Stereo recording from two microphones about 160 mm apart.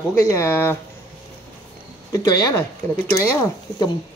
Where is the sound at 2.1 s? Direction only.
25° left (ahead or behind).